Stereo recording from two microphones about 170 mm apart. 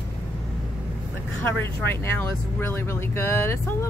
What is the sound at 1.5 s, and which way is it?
Speech, 10° left (ahead or behind).